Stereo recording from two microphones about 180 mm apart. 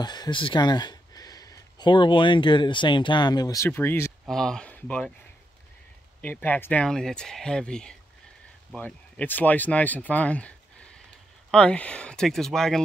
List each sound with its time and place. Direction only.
0.0 s speech: 25° left (ahead or behind); by 5.1 s 5° left (ahead or behind)
6.2 s speech: 10° left (ahead or behind)
11.5 s speech: 5° left (ahead or behind)